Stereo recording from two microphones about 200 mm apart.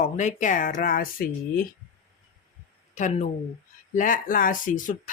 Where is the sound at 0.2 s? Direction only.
40° left (ahead or behind).